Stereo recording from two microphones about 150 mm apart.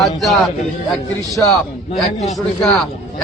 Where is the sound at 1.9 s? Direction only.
45° left (ahead or behind).